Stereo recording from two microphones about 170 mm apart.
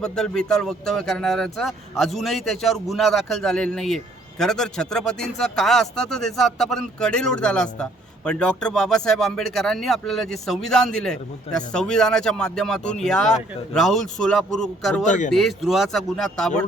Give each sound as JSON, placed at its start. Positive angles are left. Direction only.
{"t": 0.0, "sound": "a man's voice", "side_deg": 5}
{"t": 15.0, "sound": "speech", "side_deg": 45}
{"t": 15.3, "sound": "a man's voice", "side_deg": 0}